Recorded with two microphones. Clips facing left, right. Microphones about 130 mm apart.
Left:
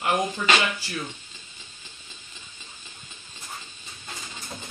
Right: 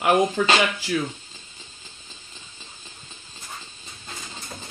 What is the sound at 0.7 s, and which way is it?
Speech, 90° right.